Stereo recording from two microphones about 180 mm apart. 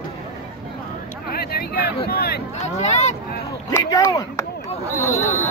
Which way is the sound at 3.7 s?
20° left (ahead or behind).